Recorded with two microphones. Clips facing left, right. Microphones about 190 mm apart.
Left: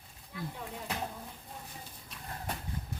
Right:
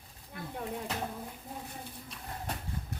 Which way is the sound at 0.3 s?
55° right (ahead or behind).